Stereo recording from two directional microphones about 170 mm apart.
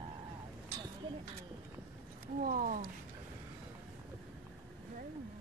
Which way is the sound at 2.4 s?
55° right (ahead or behind).